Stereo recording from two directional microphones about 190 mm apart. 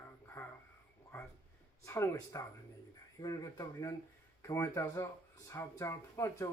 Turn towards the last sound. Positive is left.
turn(degrees=15)  # may be behind; listen again after turning